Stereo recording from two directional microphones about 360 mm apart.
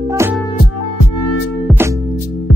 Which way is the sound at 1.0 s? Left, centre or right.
Left.